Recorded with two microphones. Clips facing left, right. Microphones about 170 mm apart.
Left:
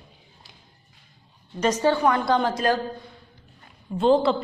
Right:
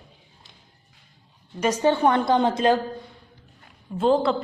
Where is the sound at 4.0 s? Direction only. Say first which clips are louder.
Left 1 dB; centre (ahead or behind).